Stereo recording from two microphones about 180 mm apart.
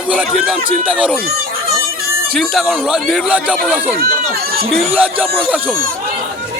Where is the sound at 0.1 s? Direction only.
5° right (ahead or behind).